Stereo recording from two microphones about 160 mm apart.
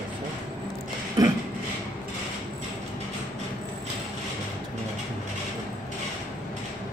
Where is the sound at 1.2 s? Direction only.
20° right (ahead or behind).